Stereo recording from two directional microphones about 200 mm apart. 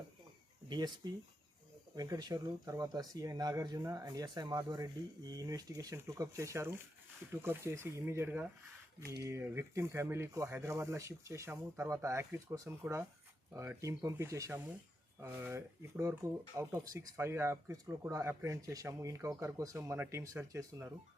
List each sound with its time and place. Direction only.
0.7 s speech: 20° right (ahead or behind)
9.0 s speech: 55° right (ahead or behind)
9.3 s speech: 15° right (ahead or behind)